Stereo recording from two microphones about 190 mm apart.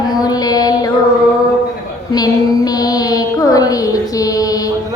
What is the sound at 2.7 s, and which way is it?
Mantra, 20° left (ahead or behind).